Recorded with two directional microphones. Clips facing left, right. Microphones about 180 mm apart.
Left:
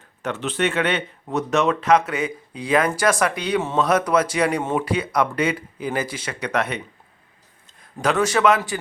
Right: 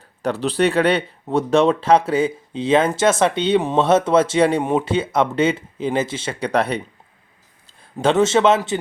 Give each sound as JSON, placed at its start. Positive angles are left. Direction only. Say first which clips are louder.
{"t": 0.2, "sound": "speech", "louder": "right 5 dB", "side_deg": -35}
{"t": 7.9, "sound": "speech", "louder": "right 4 dB", "side_deg": -25}